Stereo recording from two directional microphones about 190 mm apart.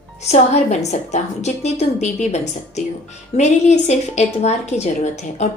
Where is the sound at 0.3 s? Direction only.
35° left (ahead or behind).